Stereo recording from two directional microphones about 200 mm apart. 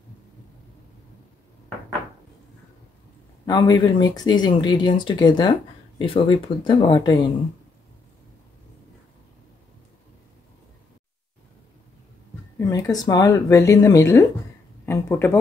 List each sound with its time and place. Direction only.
3.4 s speech: 20° left (ahead or behind)
12.5 s speech: 15° left (ahead or behind)
14.9 s a sound: 10° left (ahead or behind)